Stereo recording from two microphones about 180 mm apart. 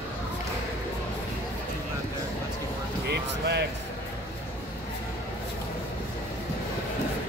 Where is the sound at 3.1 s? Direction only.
65° right (ahead or behind).